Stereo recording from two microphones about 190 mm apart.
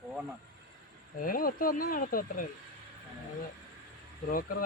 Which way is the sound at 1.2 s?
50° left (ahead or behind).